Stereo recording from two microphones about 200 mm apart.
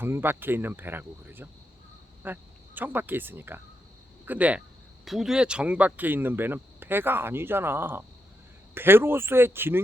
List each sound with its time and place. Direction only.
0.0 s speech: 10° right (ahead or behind)